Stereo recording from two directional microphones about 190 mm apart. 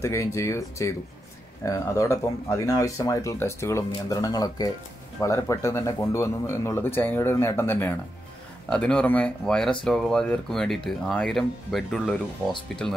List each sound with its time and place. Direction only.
0.0 s speech: 15° left (ahead or behind)